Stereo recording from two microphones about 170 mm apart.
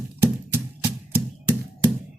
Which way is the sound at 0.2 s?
10° right (ahead or behind).